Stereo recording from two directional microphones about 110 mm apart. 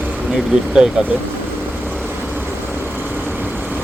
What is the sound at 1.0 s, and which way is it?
Speech, 5° right (ahead or behind).